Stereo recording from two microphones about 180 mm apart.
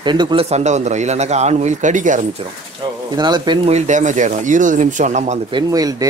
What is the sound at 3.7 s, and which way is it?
Speech, 40° right (ahead or behind).